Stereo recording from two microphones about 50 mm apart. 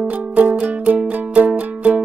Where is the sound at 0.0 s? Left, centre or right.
Right.